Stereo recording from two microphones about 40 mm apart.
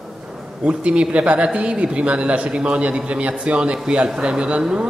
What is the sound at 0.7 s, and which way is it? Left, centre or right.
Speech, right.